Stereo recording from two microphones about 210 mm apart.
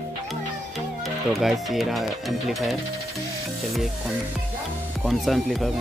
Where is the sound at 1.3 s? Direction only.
Centre (ahead or behind).